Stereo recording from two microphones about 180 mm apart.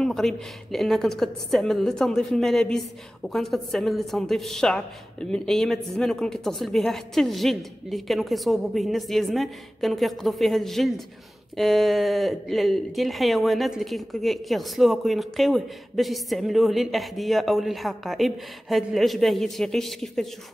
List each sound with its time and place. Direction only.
0.0 s speech: 5° left (ahead or behind)